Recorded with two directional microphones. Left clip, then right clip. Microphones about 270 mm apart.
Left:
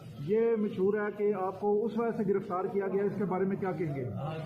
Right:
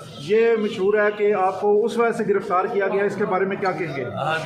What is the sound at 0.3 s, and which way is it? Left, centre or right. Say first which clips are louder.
A man's voice: right 10 dB; centre.